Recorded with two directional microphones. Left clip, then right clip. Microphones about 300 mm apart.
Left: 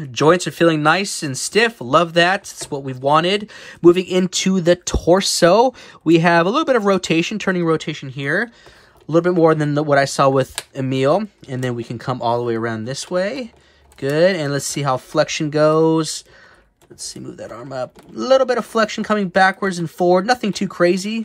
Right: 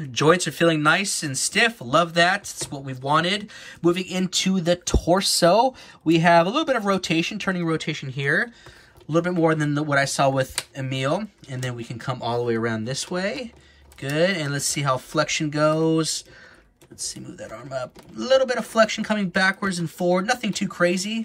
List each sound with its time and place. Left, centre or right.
0.1 s speech: centre